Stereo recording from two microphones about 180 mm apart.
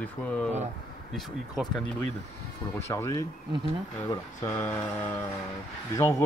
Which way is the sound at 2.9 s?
15° left (ahead or behind).